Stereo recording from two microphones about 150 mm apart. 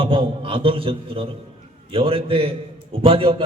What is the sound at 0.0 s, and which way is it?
A man's voice, 35° right (ahead or behind).